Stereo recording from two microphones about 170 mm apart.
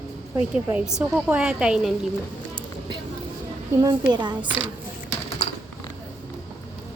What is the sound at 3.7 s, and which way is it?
Speech, 20° right (ahead or behind).